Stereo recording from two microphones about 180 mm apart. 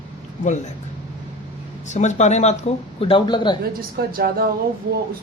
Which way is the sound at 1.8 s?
40° left (ahead or behind).